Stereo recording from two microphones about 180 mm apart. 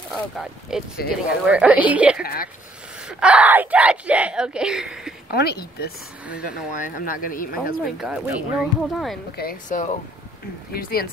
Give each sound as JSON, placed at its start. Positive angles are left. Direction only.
{"t": 0.1, "sound": "a woman's voice", "side_deg": 0}
{"t": 2.2, "sound": "speech", "side_deg": 55}
{"t": 3.1, "sound": "speech", "side_deg": -5}
{"t": 5.3, "sound": "speech", "side_deg": 60}
{"t": 6.2, "sound": "a woman's voice", "side_deg": -5}
{"t": 6.8, "sound": "speech", "side_deg": 50}
{"t": 7.8, "sound": "speech", "side_deg": -5}
{"t": 9.4, "sound": "speech", "side_deg": 50}
{"t": 10.7, "sound": "speech", "side_deg": 55}